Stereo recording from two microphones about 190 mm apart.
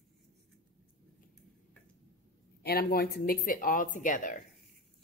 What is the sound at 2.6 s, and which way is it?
Speech, 55° left (ahead or behind).